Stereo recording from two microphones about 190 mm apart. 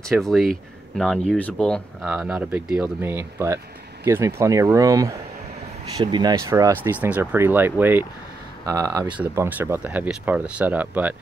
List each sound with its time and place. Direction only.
0.1 s speech: centre (ahead or behind)
2.0 s speech: 5° right (ahead or behind)